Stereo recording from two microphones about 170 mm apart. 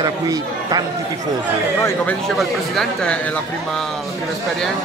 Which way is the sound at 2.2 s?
Centre (ahead or behind).